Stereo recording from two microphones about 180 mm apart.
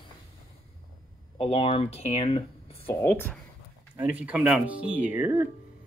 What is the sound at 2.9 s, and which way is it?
Speech, 15° left (ahead or behind).